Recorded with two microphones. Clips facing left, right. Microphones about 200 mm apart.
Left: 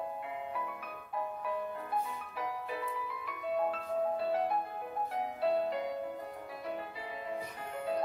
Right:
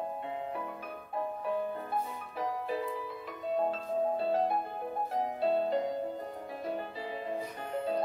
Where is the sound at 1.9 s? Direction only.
30° right (ahead or behind).